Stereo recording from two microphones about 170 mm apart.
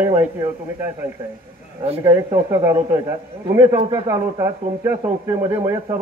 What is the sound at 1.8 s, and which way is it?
Speech, 35° right (ahead or behind).